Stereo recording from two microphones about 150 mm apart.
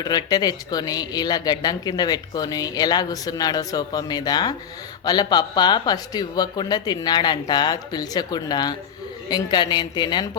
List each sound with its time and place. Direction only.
0.0 s speech: 25° left (ahead or behind)